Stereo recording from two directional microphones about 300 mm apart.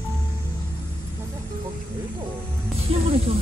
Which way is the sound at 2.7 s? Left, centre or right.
Centre.